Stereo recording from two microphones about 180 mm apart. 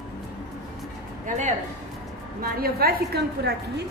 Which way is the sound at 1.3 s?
40° right (ahead or behind).